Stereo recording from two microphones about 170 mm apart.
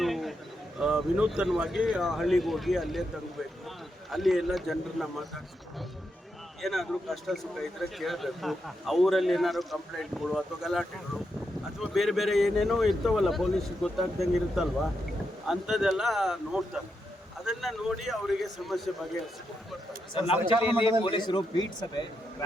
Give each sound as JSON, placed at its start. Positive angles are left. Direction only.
{"t": 0.0, "sound": "a sound", "side_deg": 0}
{"t": 0.8, "sound": "a man's voice", "side_deg": -5}
{"t": 4.1, "sound": "a man's voice", "side_deg": 0}
{"t": 6.6, "sound": "a man's voice", "side_deg": 0}
{"t": 20.1, "sound": "a man's voice", "side_deg": 30}